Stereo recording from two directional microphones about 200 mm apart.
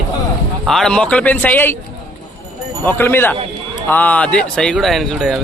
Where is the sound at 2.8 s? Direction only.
10° left (ahead or behind).